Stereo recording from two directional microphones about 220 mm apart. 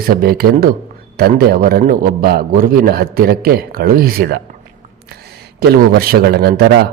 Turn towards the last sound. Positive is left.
turn(degrees=-45)  # may be behind; listen again after turning